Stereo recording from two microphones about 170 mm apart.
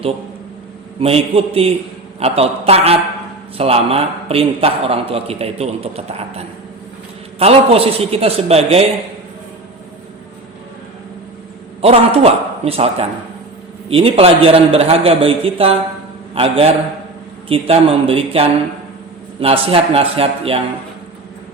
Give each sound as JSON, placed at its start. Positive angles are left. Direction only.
{"t": 1.0, "sound": "a man's voice", "side_deg": -35}
{"t": 11.8, "sound": "a man's voice", "side_deg": -35}